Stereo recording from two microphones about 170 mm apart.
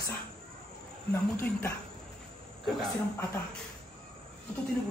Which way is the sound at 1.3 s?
15° left (ahead or behind).